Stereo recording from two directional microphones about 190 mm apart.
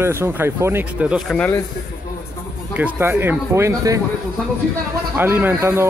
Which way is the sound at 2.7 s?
10° right (ahead or behind).